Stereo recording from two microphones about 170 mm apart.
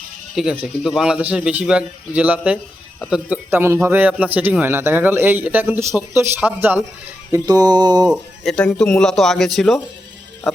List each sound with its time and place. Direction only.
0.3 s a man's voice: 5° right (ahead or behind)
7.3 s mantra: 20° right (ahead or behind)
8.0 s speech: 5° right (ahead or behind)